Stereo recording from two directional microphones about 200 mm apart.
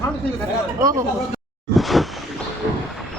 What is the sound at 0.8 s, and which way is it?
Speech, 15° right (ahead or behind).